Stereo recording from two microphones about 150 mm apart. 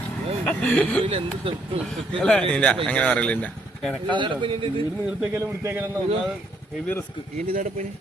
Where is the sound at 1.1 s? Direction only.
40° right (ahead or behind).